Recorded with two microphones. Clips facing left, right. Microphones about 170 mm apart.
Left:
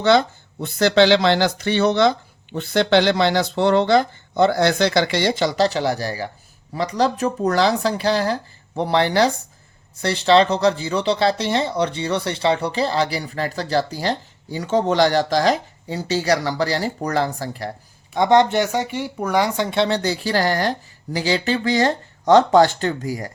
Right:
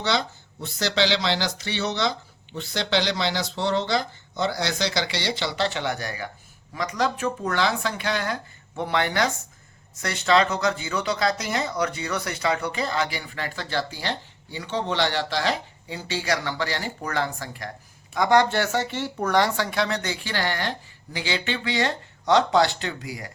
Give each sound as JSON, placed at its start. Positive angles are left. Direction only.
{"t": 0.0, "sound": "speech", "side_deg": 55}